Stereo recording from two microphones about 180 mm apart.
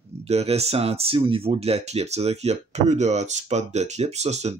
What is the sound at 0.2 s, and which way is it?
Speech, 35° right (ahead or behind).